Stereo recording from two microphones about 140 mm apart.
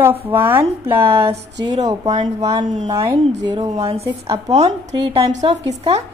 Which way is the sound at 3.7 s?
45° right (ahead or behind).